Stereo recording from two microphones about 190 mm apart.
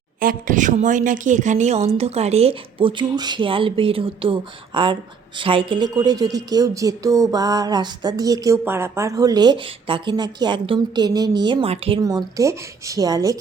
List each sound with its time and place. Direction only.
0.2 s a woman's voice: 45° right (ahead or behind); by 11.9 s 30° right (ahead or behind)
12.0 s a woman's voice: 15° right (ahead or behind)